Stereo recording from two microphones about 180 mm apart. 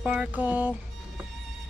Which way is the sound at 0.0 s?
5° right (ahead or behind).